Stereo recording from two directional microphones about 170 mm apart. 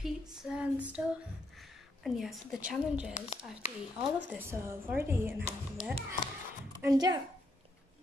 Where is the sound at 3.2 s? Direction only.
45° left (ahead or behind).